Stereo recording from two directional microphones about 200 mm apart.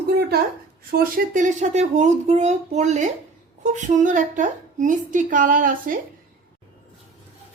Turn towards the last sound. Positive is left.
turn(degrees=-45)  # may be behind; listen again after turning